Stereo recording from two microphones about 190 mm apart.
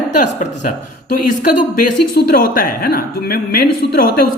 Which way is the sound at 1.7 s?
55° left (ahead or behind).